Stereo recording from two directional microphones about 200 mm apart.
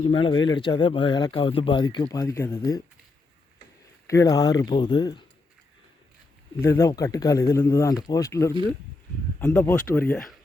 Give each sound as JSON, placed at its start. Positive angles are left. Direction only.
{"t": 0.0, "sound": "speech", "side_deg": 25}
{"t": 4.0, "sound": "speech", "side_deg": 15}
{"t": 6.7, "sound": "speech", "side_deg": 15}